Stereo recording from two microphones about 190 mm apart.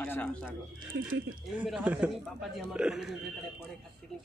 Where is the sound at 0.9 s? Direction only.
70° right (ahead or behind).